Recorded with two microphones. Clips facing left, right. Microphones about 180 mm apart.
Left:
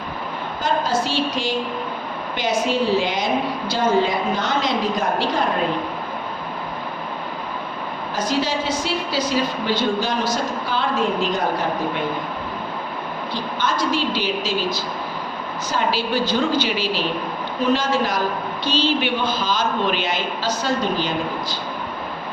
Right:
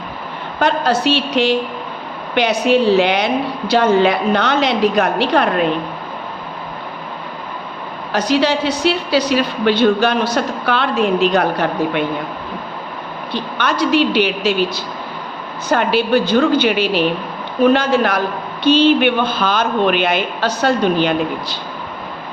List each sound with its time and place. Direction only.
0.6 s a woman's voice: 70° right (ahead or behind)
8.1 s a woman's voice: 70° right (ahead or behind)
13.3 s a woman's voice: 70° right (ahead or behind)